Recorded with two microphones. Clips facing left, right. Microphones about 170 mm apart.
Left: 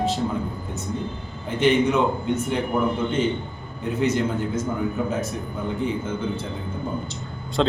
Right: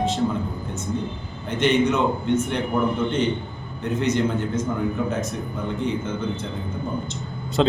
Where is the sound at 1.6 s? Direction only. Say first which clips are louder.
Left 1 dB; 5° left (ahead or behind).